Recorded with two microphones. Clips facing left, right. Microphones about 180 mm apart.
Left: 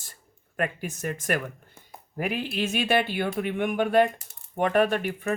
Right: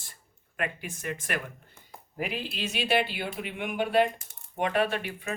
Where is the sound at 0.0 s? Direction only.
45° left (ahead or behind).